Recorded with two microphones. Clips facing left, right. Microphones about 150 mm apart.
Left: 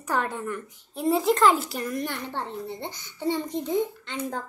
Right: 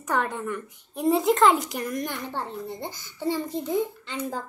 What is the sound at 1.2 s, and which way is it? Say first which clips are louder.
A child's voice: even; 20° right (ahead or behind).